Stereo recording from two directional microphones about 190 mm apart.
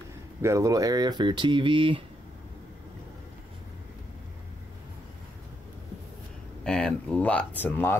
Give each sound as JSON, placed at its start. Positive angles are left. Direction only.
{"t": 0.4, "sound": "speech", "side_deg": -15}
{"t": 6.6, "sound": "speech", "side_deg": 5}